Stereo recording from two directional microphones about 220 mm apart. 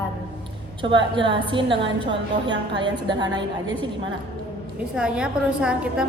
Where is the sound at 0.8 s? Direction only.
20° right (ahead or behind).